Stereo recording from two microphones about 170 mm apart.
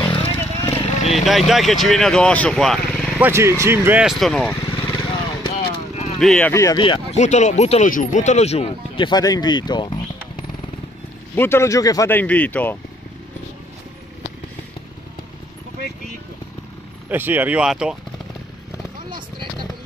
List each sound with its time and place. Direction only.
0.0 s vehicle: 30° left (ahead or behind)
0.7 s vehicle: 35° left (ahead or behind)
1.1 s speech: centre (ahead or behind)
3.2 s speech: 15° right (ahead or behind); by 4.6 s centre (ahead or behind)
5.4 s vehicle: 35° left (ahead or behind)
6.1 s speech: 5° left (ahead or behind)
6.5 s speech: 20° left (ahead or behind)
6.8 s speech: 30° left (ahead or behind)
7.2 s speech: 45° left (ahead or behind); by 10.4 s 30° left (ahead or behind)
11.3 s speech: 15° left (ahead or behind)
17.1 s speech: 10° right (ahead or behind)